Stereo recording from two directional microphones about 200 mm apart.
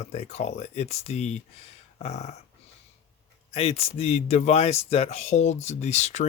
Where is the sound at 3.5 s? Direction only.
30° left (ahead or behind).